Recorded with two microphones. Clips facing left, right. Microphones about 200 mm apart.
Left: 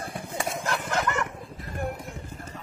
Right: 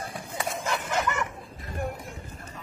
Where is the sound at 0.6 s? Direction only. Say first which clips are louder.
Right 1 dB; 5° right (ahead or behind).